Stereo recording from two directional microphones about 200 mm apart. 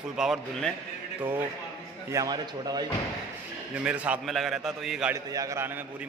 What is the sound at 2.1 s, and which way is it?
Speech, 20° right (ahead or behind).